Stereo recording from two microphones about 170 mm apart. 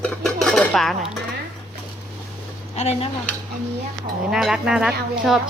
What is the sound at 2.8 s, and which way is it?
Speech, 40° left (ahead or behind).